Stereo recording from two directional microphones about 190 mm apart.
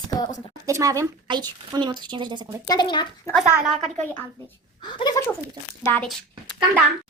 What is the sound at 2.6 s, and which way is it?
Speech, 25° left (ahead or behind).